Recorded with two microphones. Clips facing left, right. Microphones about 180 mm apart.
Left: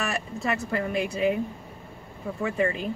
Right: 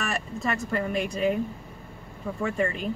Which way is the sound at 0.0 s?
Centre (ahead or behind).